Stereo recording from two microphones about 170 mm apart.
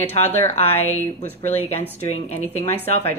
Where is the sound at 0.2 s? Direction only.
10° left (ahead or behind).